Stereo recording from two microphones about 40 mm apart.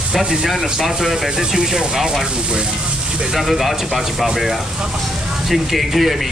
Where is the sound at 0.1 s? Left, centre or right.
Centre.